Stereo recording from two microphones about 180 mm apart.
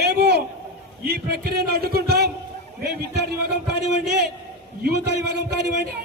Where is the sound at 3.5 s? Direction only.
65° right (ahead or behind).